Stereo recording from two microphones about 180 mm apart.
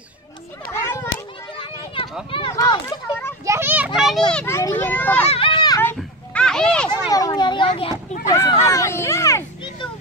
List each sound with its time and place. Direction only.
0.7 s children playing: 15° left (ahead or behind)
2.3 s a child's voice: 25° left (ahead or behind)
3.4 s children playing: 10° right (ahead or behind)
4.3 s a child's voice: 10° left (ahead or behind)
5.2 s a sound: 30° left (ahead or behind)
5.9 s children playing: 5° left (ahead or behind)
7.1 s a sound: 20° left (ahead or behind)
8.3 s a child's voice: 20° left (ahead or behind)
8.6 s vehicle: 15° left (ahead or behind)